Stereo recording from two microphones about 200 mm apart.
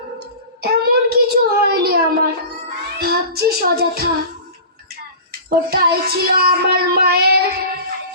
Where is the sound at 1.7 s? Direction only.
50° right (ahead or behind).